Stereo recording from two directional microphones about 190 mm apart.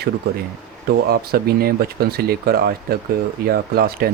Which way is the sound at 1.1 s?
55° right (ahead or behind).